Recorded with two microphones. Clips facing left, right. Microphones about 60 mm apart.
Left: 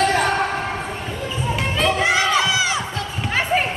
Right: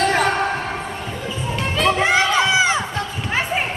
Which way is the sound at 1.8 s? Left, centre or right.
Right.